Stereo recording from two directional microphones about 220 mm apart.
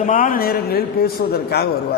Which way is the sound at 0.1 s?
40° left (ahead or behind).